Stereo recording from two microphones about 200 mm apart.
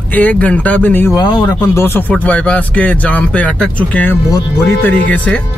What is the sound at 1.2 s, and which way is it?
Speech, 20° left (ahead or behind).